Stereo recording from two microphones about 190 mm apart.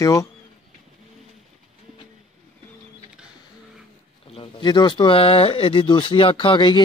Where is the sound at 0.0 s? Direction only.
15° left (ahead or behind).